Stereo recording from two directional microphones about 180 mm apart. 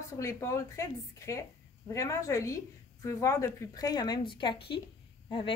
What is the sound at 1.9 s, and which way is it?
A woman's voice, 15° left (ahead or behind).